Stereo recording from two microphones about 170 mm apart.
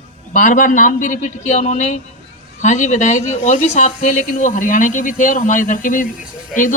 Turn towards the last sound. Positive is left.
turn(degrees=50)  # may be behind; listen again after turning